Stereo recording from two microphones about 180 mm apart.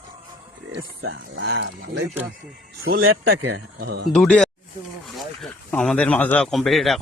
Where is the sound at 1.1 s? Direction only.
70° right (ahead or behind).